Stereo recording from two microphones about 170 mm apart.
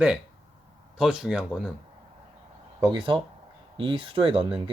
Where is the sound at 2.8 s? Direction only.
30° right (ahead or behind).